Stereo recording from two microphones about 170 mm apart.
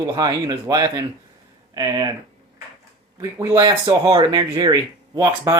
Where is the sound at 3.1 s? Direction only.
20° right (ahead or behind).